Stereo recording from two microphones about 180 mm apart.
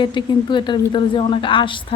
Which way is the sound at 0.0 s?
25° left (ahead or behind).